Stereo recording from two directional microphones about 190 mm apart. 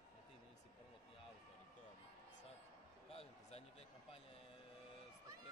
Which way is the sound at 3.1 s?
30° left (ahead or behind).